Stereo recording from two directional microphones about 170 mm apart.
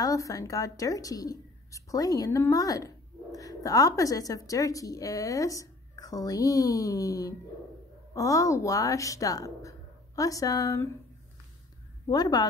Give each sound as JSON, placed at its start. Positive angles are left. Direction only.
{"t": 0.0, "sound": "a woman's voice", "side_deg": 20}
{"t": 12.1, "sound": "a woman's voice", "side_deg": 25}